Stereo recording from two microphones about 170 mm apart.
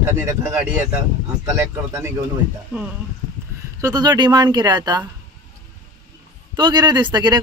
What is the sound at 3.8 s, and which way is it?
Speech, 25° right (ahead or behind).